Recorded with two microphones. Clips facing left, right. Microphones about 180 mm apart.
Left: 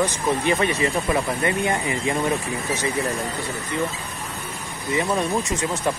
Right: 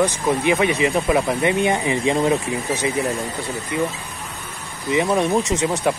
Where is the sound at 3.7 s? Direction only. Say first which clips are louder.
Right 3 dB; 10° right (ahead or behind).